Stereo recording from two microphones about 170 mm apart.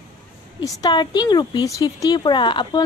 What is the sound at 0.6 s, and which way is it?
Speech, 20° left (ahead or behind).